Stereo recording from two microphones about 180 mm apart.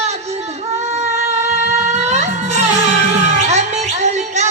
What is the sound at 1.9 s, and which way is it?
Music, 40° right (ahead or behind).